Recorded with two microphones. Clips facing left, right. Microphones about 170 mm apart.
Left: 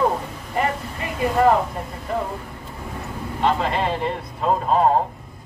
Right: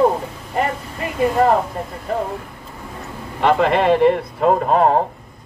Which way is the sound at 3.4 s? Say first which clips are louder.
Right 6 dB; 65° right (ahead or behind).